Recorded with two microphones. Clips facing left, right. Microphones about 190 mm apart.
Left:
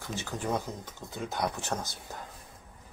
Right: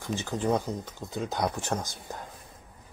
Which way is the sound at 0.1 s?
20° right (ahead or behind).